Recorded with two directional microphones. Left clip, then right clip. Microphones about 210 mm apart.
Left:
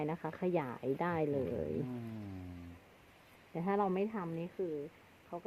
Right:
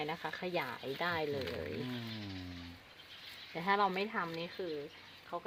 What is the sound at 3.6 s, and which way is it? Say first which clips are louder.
Speech: right 2 dB; 35° left (ahead or behind).